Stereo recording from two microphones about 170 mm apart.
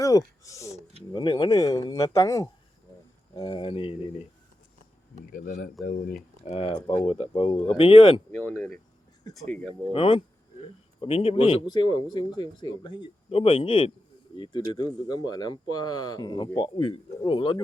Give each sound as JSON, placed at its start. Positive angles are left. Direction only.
{"t": 0.0, "sound": "a sound", "side_deg": 20}
{"t": 1.1, "sound": "speech", "side_deg": 25}
{"t": 5.3, "sound": "speech", "side_deg": 60}
{"t": 6.4, "sound": "speech", "side_deg": 35}
{"t": 8.3, "sound": "speech", "side_deg": 10}
{"t": 9.9, "sound": "speech", "side_deg": 30}